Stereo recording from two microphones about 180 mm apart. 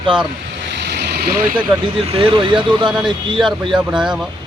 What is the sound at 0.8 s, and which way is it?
Vehicle, 65° right (ahead or behind).